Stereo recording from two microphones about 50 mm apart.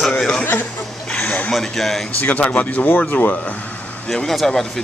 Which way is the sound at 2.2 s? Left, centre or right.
Left.